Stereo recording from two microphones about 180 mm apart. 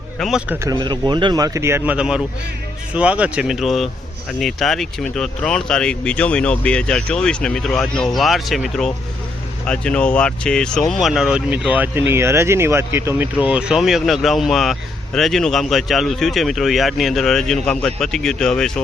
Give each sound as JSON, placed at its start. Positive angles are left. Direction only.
{"t": 0.2, "sound": "speech", "side_deg": -5}
{"t": 0.7, "sound": "speech", "side_deg": -25}